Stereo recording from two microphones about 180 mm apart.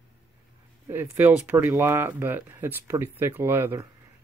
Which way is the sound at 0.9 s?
10° right (ahead or behind).